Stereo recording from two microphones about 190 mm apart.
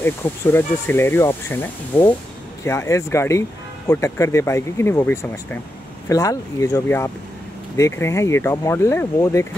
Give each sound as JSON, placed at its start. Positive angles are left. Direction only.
{"t": 0.0, "sound": "speech", "side_deg": 10}